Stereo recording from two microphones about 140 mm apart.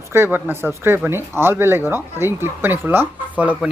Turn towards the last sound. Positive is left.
turn(degrees=-10)  # may be behind; listen again after turning